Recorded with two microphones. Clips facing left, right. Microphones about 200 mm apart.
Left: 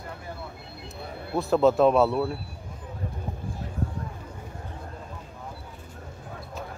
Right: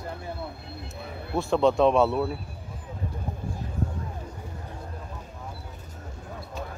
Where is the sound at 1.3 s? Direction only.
Centre (ahead or behind).